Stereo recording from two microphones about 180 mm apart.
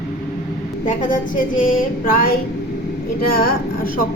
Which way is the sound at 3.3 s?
55° left (ahead or behind).